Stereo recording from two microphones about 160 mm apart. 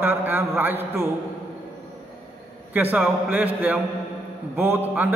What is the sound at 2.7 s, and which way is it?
A man's voice, 10° right (ahead or behind).